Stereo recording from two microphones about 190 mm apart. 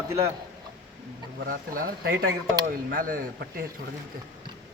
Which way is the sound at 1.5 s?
50° right (ahead or behind).